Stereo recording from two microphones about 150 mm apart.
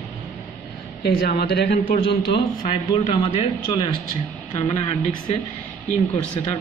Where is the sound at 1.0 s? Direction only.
90° left.